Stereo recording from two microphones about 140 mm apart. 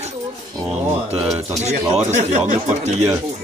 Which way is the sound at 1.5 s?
55° right (ahead or behind).